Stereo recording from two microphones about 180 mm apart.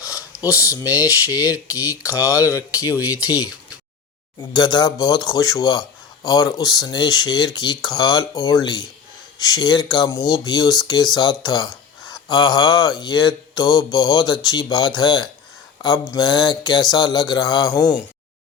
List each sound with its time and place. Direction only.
0.0 s a sound: 15° left (ahead or behind)
1.5 s speech: 10° right (ahead or behind)
1.9 s speech: 15° left (ahead or behind)
2.6 s speech: 10° right (ahead or behind)
4.4 s speech: 25° left (ahead or behind)